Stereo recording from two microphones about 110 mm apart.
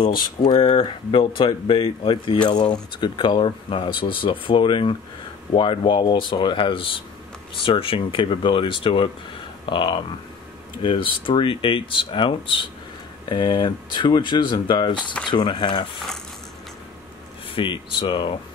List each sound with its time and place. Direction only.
0.4 s speech: 55° left (ahead or behind)
17.6 s speech: 50° left (ahead or behind)